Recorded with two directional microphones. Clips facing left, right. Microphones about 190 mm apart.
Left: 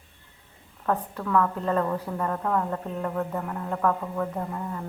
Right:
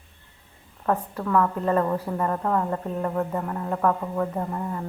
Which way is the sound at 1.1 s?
20° right (ahead or behind).